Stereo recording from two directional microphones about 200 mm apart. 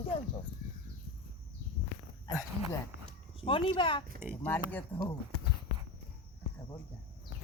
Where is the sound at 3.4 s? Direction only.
25° left (ahead or behind).